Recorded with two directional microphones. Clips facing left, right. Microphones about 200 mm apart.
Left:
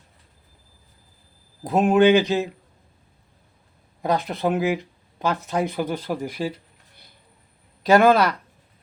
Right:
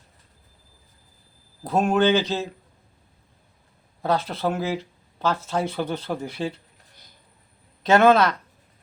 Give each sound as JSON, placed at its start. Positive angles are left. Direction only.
{"t": 1.6, "sound": "speech", "side_deg": 15}
{"t": 4.0, "sound": "speech", "side_deg": 15}
{"t": 7.9, "sound": "speech", "side_deg": 10}